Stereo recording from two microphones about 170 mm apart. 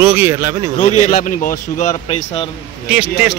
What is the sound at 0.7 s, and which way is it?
Speech, 45° left (ahead or behind).